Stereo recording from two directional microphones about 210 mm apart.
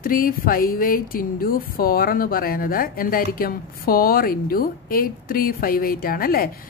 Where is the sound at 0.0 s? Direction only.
40° left (ahead or behind).